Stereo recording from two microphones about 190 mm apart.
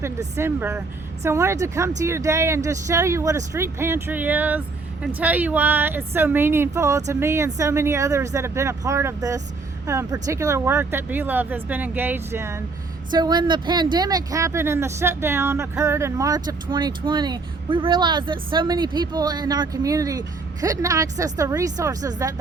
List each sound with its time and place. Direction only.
0.0 s speech: 15° right (ahead or behind)